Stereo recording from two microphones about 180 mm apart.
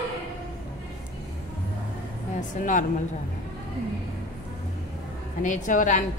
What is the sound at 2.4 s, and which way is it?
Speech, 45° left (ahead or behind).